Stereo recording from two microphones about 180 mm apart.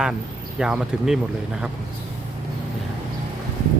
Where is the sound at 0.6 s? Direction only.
5° right (ahead or behind).